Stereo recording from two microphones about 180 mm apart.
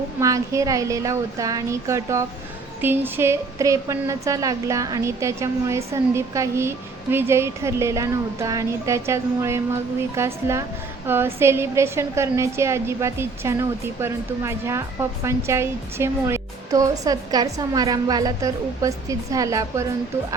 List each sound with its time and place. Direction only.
0.2 s a woman's voice: 15° right (ahead or behind)